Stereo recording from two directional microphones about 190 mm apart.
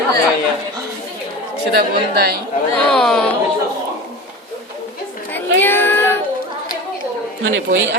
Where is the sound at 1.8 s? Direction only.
55° right (ahead or behind).